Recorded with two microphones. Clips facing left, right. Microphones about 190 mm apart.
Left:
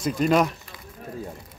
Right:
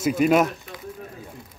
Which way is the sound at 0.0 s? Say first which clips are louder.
Right 2 dB; 5° right (ahead or behind).